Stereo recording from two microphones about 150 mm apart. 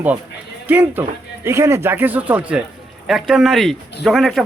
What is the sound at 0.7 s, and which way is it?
A man's voice, 10° right (ahead or behind).